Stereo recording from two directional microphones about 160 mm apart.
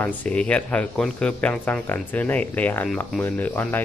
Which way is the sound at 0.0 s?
10° left (ahead or behind).